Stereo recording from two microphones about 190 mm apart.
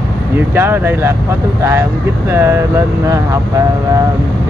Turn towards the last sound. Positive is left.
turn(degrees=-15)  # may be behind; listen again after turning